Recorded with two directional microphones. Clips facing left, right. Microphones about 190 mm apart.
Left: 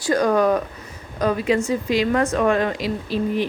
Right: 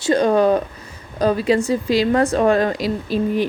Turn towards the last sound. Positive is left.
turn(degrees=-40)  # may be behind; listen again after turning